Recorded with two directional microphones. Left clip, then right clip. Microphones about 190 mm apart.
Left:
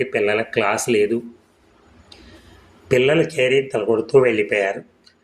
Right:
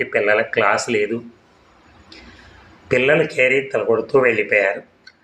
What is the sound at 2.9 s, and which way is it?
Speech, 45° left (ahead or behind).